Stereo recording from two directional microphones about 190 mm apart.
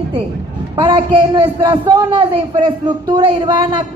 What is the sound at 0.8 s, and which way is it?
A man's voice, 25° right (ahead or behind).